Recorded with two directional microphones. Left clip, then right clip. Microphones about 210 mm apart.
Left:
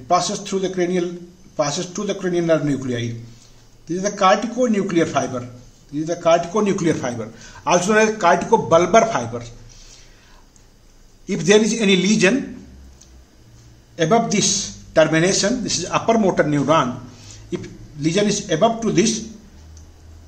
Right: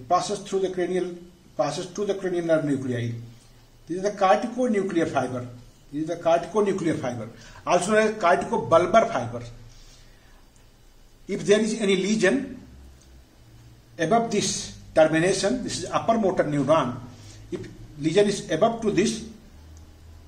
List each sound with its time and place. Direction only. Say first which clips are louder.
0.1 s a man's voice: left 4 dB; 30° left (ahead or behind)
11.2 s a man's voice: left 6 dB; 30° left (ahead or behind)
13.9 s a man's voice: left 5 dB; 30° left (ahead or behind)
18.0 s a man's voice: left 2 dB; 25° left (ahead or behind)